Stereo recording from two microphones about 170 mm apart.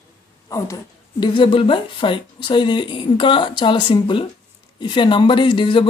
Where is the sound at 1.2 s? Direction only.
30° left (ahead or behind).